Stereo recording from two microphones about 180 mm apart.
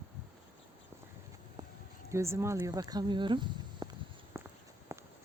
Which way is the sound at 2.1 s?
15° right (ahead or behind).